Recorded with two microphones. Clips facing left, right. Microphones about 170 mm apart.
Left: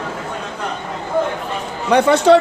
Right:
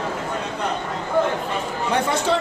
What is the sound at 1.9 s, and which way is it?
Speech, 75° left (ahead or behind).